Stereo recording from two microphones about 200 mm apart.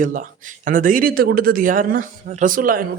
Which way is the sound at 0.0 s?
40° right (ahead or behind).